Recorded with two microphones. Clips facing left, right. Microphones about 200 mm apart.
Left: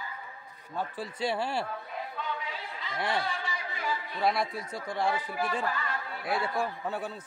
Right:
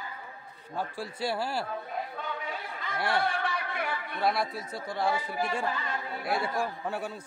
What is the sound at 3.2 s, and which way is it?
Chatter, 60° right (ahead or behind).